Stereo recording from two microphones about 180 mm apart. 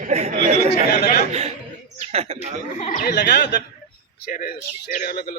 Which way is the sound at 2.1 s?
35° right (ahead or behind).